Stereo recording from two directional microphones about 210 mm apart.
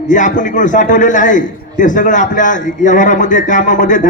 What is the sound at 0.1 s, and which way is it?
A man's voice, 35° left (ahead or behind).